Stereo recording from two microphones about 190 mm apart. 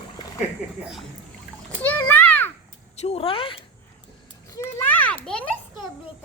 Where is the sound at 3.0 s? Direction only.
30° left (ahead or behind).